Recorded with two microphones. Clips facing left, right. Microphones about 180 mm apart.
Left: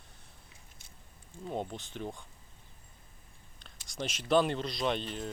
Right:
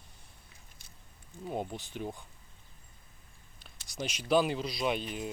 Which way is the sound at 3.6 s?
5° right (ahead or behind).